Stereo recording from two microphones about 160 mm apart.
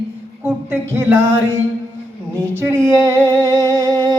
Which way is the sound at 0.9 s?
15° right (ahead or behind).